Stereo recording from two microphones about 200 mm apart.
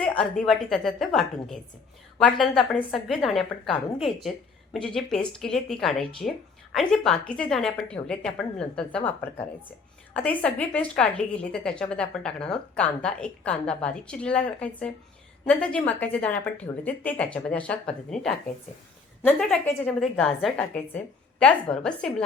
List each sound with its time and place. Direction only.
0.0 s a woman's voice: 5° left (ahead or behind)
6.2 s a woman's voice: 45° left (ahead or behind)
6.7 s a woman's voice: centre (ahead or behind)
10.2 s a woman's voice: 5° left (ahead or behind)